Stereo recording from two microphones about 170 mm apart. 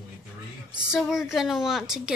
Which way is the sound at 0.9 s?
Centre (ahead or behind).